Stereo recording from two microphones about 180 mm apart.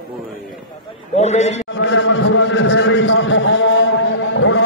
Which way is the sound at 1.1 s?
40° left (ahead or behind).